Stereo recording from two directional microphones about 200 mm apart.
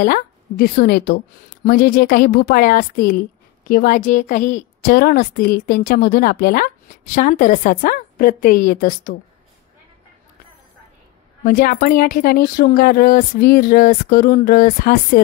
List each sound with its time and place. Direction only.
0.0 s a woman's voice: 50° left (ahead or behind)
11.4 s a woman's voice: 45° left (ahead or behind)